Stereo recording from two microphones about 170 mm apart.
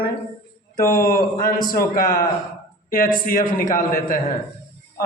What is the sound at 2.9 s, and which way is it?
A man's voice, 55° left (ahead or behind).